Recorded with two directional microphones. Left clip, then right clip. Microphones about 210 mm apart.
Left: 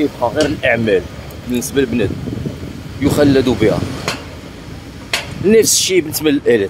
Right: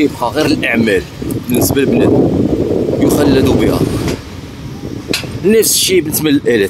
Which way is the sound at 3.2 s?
10° right (ahead or behind).